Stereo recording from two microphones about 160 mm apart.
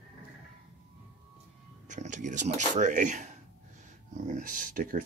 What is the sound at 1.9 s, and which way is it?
Speech, 50° right (ahead or behind).